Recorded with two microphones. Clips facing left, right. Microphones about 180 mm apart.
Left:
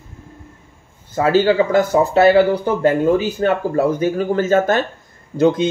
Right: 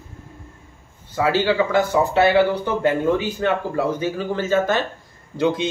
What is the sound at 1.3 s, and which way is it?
Speech, 45° left (ahead or behind).